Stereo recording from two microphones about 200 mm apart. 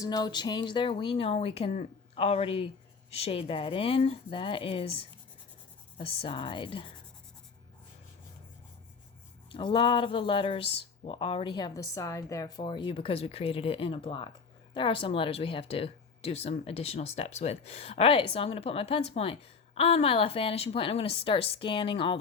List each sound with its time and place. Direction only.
0.0 s speech: 20° left (ahead or behind)
9.5 s speech: 25° left (ahead or behind)